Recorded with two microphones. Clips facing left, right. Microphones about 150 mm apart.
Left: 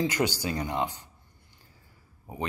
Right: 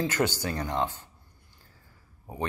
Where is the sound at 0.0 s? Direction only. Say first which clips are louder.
Even; 15° left (ahead or behind).